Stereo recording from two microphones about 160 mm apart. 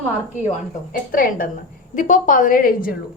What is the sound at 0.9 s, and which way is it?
A woman's voice, 60° left (ahead or behind).